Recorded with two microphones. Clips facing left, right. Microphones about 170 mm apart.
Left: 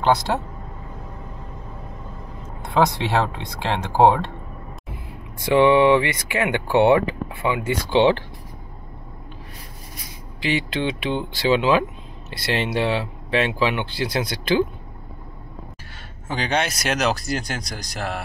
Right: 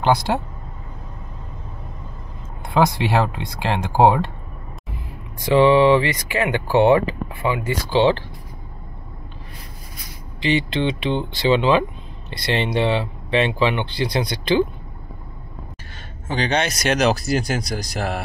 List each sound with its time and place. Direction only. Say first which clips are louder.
2.6 s speech: right 1 dB; 10° right (ahead or behind)
5.5 s speech: right 1 dB; 15° left (ahead or behind)
10.4 s speech: right 3 dB; 10° left (ahead or behind)
16.3 s speech: right 2 dB; 5° left (ahead or behind)